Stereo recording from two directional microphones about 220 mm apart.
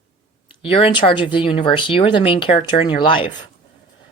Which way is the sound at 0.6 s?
25° left (ahead or behind).